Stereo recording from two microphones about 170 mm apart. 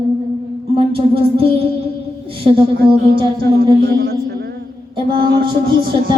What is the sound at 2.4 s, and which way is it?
Speech, 30° right (ahead or behind).